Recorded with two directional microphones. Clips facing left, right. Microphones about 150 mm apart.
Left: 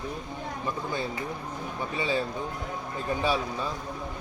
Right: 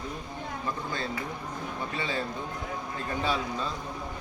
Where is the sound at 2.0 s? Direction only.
15° left (ahead or behind).